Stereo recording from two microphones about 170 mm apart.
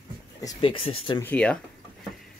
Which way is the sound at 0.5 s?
35° left (ahead or behind).